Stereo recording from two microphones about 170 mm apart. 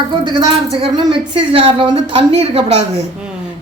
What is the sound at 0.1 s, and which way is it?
A woman's voice, 30° right (ahead or behind).